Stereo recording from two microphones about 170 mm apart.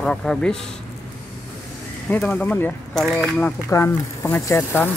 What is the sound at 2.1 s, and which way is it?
Speech, 10° left (ahead or behind).